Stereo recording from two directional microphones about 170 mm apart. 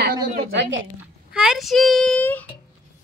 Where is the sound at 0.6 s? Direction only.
90° right.